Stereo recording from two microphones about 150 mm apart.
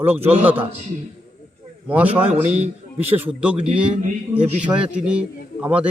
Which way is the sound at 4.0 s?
50° right (ahead or behind).